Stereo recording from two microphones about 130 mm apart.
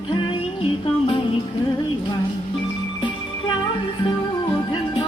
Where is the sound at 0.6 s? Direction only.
45° left (ahead or behind).